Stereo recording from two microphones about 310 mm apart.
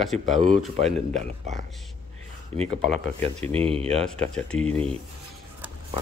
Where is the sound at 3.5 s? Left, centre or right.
Centre.